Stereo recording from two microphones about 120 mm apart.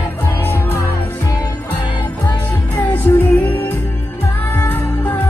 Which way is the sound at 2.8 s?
15° left (ahead or behind).